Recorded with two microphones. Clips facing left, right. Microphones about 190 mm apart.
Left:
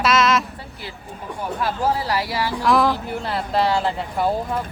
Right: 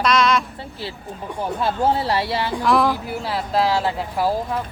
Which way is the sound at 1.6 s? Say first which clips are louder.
Right 2 dB; 25° right (ahead or behind).